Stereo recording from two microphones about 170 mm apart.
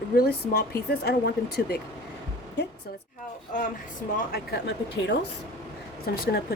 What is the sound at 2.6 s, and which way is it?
Speech, 90° left.